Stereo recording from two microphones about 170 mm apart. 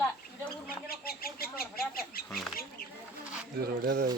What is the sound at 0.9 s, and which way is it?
Speech, 60° left (ahead or behind).